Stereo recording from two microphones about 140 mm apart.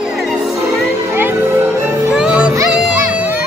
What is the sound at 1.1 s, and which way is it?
Music, 15° right (ahead or behind).